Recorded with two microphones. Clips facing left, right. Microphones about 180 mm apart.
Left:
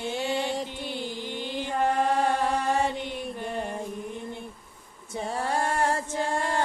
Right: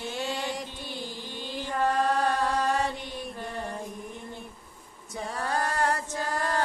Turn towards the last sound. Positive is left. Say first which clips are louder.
# left 2 dB
turn(degrees=25)  # may be behind; listen again after turning